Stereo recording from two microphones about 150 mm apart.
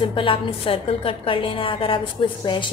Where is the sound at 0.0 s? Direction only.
35° left (ahead or behind).